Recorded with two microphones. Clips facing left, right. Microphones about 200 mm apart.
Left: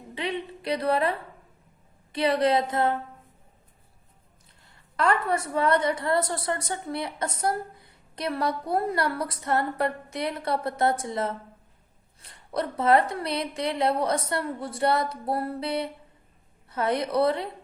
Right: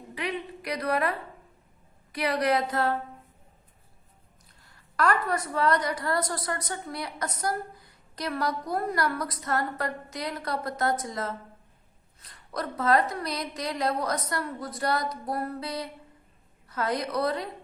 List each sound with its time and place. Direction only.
0.1 s a sound: 25° left (ahead or behind)
2.1 s a woman's voice: 25° left (ahead or behind)
4.9 s a woman's voice: 25° left (ahead or behind)